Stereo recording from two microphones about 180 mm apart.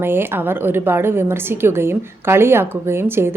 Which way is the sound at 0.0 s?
10° right (ahead or behind).